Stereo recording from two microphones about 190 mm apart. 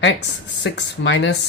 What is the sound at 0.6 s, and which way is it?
Speech, 70° left (ahead or behind).